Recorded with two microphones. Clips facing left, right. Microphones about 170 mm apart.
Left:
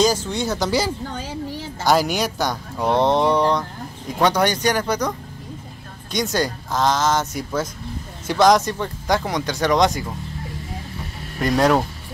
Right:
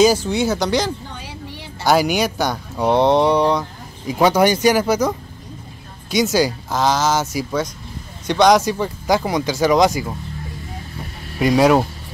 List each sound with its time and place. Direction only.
0.0 s speech: 10° right (ahead or behind)
1.1 s a sound: 45° left (ahead or behind)
1.9 s speech: centre (ahead or behind)
11.3 s speech: 5° right (ahead or behind)